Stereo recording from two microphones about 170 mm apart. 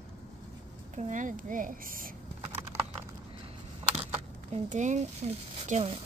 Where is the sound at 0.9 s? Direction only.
45° right (ahead or behind).